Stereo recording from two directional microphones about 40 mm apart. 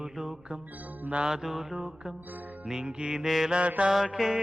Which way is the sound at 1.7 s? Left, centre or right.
Centre.